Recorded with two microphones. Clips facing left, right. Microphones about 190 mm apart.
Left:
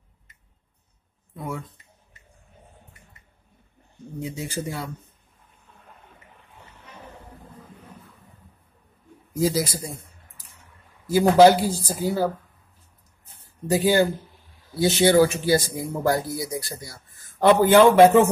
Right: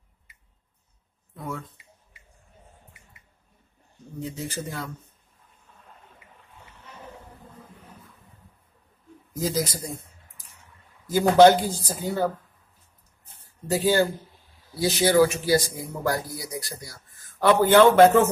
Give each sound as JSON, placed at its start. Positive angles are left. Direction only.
{"t": 1.3, "sound": "speech", "side_deg": 10}
{"t": 4.2, "sound": "speech", "side_deg": 10}
{"t": 9.3, "sound": "speech", "side_deg": 10}
{"t": 11.1, "sound": "speech", "side_deg": 10}
{"t": 13.7, "sound": "speech", "side_deg": 15}